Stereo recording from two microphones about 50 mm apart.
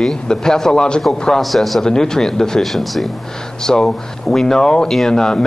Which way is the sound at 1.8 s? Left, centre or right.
Centre.